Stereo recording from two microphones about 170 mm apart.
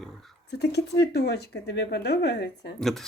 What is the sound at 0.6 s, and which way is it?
Speech, 75° left (ahead or behind).